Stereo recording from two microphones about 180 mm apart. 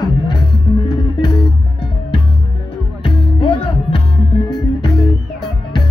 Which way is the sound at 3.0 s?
25° left (ahead or behind).